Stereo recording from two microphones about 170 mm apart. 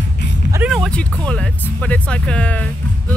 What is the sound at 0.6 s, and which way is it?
Speech, 5° left (ahead or behind).